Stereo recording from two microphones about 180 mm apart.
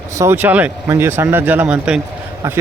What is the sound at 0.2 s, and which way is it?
Speech, 10° right (ahead or behind).